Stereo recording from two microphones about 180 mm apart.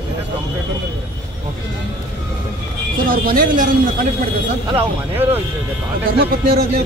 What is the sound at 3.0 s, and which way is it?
Speech, 55° right (ahead or behind).